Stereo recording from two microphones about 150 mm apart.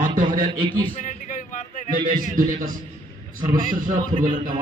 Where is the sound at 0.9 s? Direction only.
60° left (ahead or behind).